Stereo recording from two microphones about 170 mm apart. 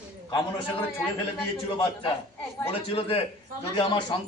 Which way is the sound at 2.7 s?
35° left (ahead or behind).